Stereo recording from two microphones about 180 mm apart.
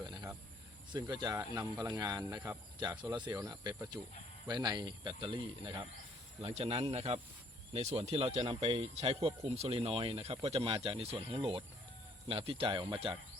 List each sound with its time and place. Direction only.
0.0 s cricket: 20° right (ahead or behind)
0.9 s speech: 25° right (ahead or behind)